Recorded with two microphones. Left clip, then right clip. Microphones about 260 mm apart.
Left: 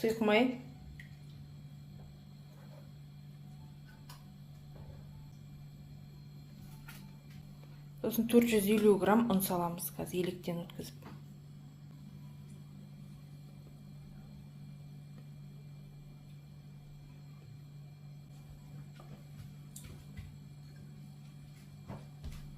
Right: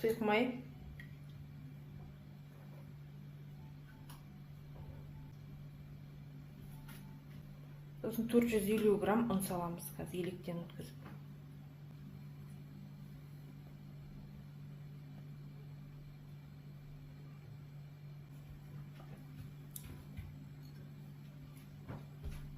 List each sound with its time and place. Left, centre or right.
0.0 s a woman's voice: left
8.0 s a woman's voice: left